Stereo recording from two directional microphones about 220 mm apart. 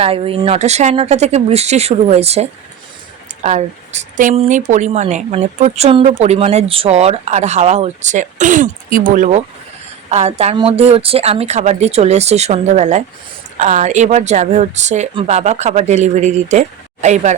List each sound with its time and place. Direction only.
0.0 s speech: 25° right (ahead or behind)